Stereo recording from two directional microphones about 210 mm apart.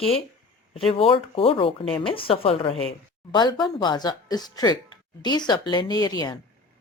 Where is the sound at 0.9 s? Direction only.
25° left (ahead or behind).